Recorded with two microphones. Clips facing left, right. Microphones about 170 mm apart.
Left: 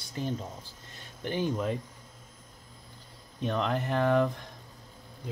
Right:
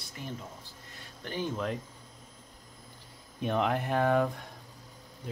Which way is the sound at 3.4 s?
10° right (ahead or behind).